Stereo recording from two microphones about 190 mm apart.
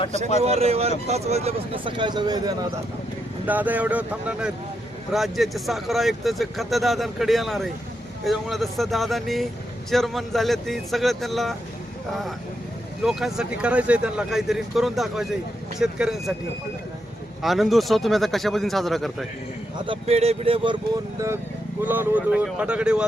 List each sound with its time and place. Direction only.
0.4 s speech: 35° right (ahead or behind)
3.4 s speech: 10° right (ahead or behind)
13.1 s speech: centre (ahead or behind)
17.4 s speech: centre (ahead or behind)
19.8 s speech: 30° right (ahead or behind)
21.8 s speech: 10° right (ahead or behind)